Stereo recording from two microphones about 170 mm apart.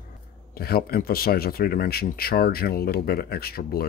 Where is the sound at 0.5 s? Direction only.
65° left (ahead or behind).